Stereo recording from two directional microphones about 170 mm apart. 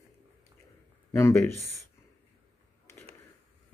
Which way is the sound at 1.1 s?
15° left (ahead or behind).